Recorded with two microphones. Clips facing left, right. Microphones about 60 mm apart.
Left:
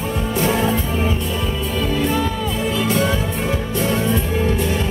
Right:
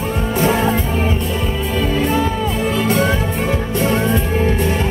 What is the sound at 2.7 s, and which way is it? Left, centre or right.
Music, right.